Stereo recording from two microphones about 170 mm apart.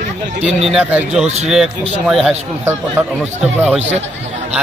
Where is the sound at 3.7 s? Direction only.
40° right (ahead or behind).